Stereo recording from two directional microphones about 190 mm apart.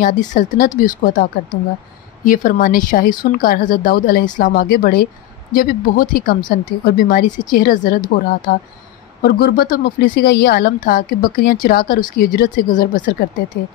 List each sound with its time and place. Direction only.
0.0 s speech: 40° left (ahead or behind)
13.1 s speech: 55° left (ahead or behind)